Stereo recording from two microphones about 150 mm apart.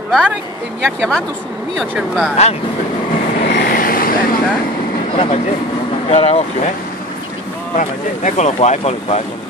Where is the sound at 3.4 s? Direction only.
90° left; by 4.4 s 75° left (ahead or behind).